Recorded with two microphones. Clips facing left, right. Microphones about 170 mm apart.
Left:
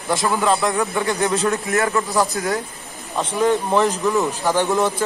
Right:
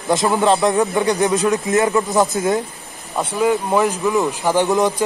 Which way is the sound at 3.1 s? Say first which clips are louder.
Right 1 dB; 5° right (ahead or behind).